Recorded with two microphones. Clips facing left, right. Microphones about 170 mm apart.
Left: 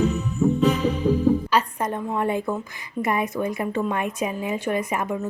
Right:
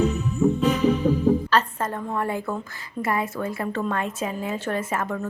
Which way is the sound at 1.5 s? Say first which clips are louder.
Even; 15° left (ahead or behind).